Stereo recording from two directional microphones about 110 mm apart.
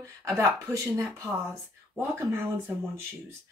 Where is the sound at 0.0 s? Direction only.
30° right (ahead or behind).